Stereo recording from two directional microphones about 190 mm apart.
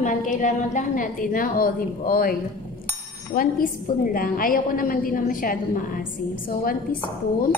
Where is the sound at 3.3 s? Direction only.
50° left (ahead or behind).